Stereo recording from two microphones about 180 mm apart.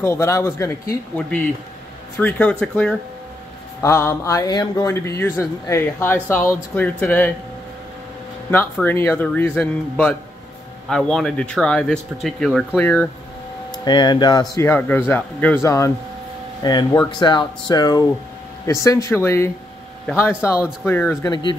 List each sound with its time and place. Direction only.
0.0 s a man's voice: 15° left (ahead or behind)
8.8 s a man's voice: 10° left (ahead or behind)
13.8 s a man's voice: 25° left (ahead or behind)